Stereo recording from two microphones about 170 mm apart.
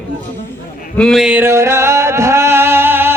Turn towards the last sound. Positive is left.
turn(degrees=-15)  # may be behind; listen again after turning